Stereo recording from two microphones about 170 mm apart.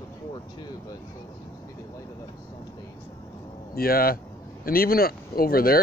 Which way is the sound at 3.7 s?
60° left (ahead or behind).